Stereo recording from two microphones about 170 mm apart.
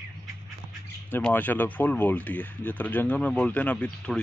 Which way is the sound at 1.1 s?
10° left (ahead or behind).